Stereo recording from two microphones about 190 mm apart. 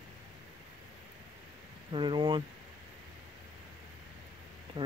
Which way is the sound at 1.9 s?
25° right (ahead or behind).